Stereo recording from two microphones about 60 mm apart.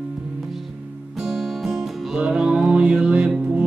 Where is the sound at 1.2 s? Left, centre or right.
Centre.